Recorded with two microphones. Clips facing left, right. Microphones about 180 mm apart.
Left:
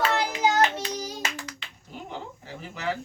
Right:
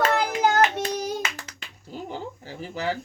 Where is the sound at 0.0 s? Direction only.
50° right (ahead or behind).